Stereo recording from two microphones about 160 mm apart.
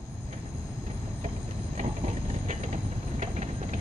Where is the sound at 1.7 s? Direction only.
50° right (ahead or behind).